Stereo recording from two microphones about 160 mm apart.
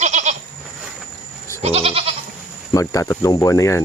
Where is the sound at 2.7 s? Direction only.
20° left (ahead or behind).